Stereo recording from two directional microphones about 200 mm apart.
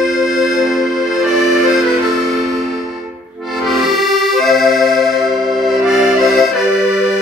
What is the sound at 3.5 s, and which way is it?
Accordion, centre (ahead or behind).